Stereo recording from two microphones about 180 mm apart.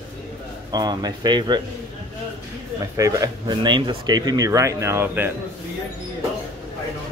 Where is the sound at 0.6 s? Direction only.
25° right (ahead or behind).